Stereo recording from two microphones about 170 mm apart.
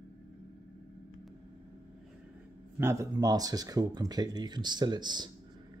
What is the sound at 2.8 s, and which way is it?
Speech, 15° right (ahead or behind).